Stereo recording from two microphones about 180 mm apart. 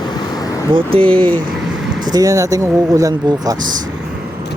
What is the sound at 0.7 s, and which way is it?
Speech, 30° right (ahead or behind).